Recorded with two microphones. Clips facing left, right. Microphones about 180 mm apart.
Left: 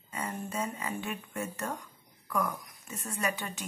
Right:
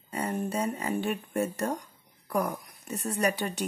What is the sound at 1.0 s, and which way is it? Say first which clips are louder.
Speech: right 7 dB; 35° right (ahead or behind).